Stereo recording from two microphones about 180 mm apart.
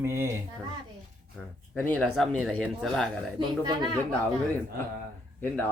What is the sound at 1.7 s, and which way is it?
Speech, 5° left (ahead or behind).